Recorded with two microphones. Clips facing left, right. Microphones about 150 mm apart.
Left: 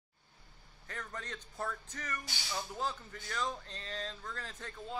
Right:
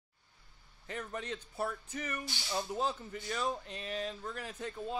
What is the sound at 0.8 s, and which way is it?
Speech, 20° right (ahead or behind).